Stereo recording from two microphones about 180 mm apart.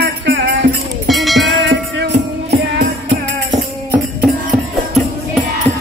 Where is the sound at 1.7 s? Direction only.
75° right (ahead or behind).